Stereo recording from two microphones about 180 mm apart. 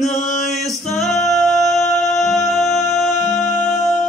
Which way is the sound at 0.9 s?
Centre (ahead or behind).